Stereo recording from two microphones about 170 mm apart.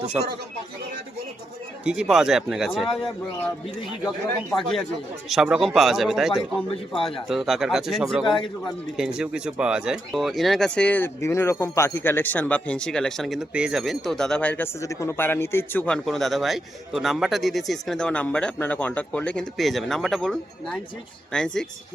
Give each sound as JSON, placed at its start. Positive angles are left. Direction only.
{"t": 0.1, "sound": "speech", "side_deg": -10}
{"t": 1.8, "sound": "speech", "side_deg": -5}
{"t": 5.3, "sound": "speech", "side_deg": 0}
{"t": 6.7, "sound": "a man's voice", "side_deg": 30}
{"t": 7.3, "sound": "speech", "side_deg": 0}